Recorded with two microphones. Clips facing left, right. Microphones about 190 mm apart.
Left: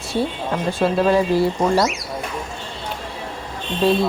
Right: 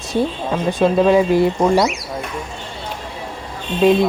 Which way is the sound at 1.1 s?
15° right (ahead or behind).